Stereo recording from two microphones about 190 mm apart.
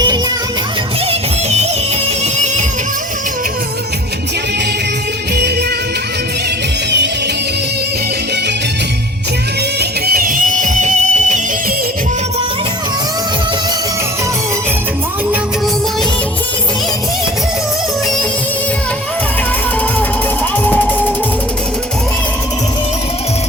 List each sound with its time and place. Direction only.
10.1 s music: 50° right (ahead or behind)
20.7 s music: 10° left (ahead or behind)